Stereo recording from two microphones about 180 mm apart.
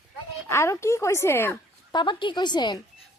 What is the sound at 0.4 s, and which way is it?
A child's voice, 15° left (ahead or behind).